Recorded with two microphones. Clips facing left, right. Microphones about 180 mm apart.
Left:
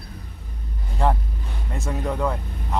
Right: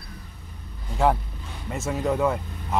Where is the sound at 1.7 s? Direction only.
Centre (ahead or behind).